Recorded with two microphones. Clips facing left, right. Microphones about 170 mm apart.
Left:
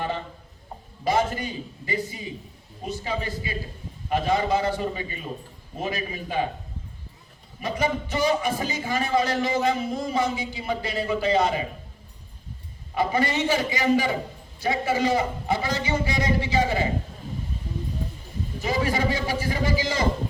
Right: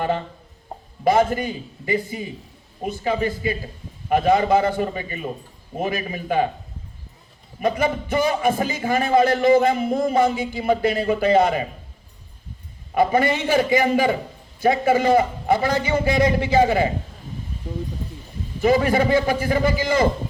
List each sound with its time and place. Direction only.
1.0 s a man's voice: 50° right (ahead or behind)
7.6 s a man's voice: 55° right (ahead or behind)
12.9 s a man's voice: 55° right (ahead or behind)
18.6 s a man's voice: 55° right (ahead or behind)